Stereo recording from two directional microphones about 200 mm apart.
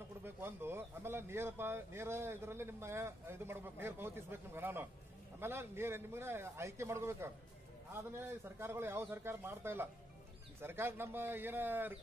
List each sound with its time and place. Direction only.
0.2 s speech: 10° right (ahead or behind)